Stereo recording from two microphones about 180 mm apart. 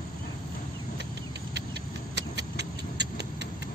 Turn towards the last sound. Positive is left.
turn(degrees=-70)  # may be behind; listen again after turning